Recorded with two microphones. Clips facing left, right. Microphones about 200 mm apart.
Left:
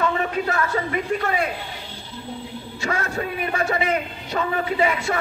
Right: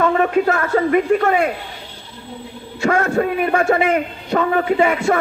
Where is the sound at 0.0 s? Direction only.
45° right (ahead or behind).